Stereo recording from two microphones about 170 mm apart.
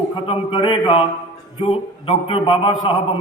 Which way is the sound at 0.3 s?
30° left (ahead or behind).